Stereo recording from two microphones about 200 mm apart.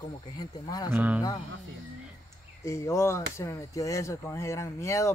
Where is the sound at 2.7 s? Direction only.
15° left (ahead or behind).